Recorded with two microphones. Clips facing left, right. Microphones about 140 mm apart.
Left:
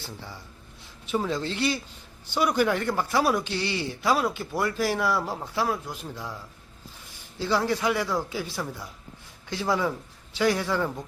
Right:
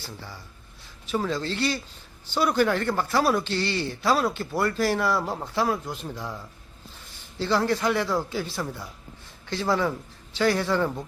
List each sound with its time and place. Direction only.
1.0 s a man's voice: 15° left (ahead or behind)
7.3 s speech: 5° left (ahead or behind)